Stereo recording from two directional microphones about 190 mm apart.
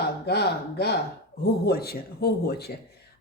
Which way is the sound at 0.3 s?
60° left (ahead or behind).